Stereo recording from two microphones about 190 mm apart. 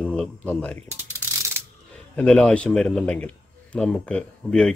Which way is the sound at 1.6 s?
10° right (ahead or behind).